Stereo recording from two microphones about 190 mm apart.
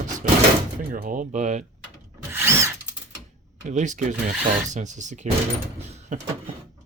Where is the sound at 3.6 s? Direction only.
40° right (ahead or behind).